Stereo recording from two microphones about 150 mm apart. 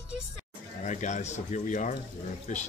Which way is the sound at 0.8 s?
55° left (ahead or behind).